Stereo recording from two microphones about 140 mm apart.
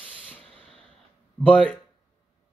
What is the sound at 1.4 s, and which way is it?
Speech, 10° left (ahead or behind).